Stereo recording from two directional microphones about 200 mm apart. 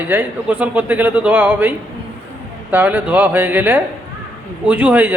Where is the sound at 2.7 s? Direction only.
10° right (ahead or behind).